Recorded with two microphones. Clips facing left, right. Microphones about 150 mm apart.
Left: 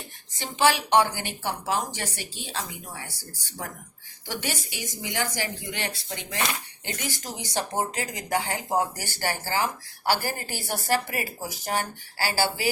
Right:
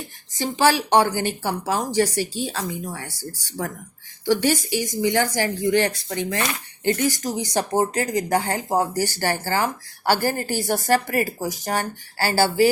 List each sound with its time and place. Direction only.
0.3 s speech: 40° right (ahead or behind)
4.4 s a woman's voice: 45° right (ahead or behind)